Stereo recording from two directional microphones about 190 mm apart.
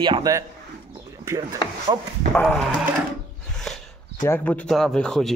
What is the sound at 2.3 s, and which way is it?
Speech, 5° left (ahead or behind).